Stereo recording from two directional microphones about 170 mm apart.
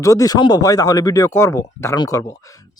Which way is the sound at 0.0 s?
20° left (ahead or behind).